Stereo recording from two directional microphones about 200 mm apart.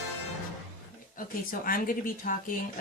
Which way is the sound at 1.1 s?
45° left (ahead or behind).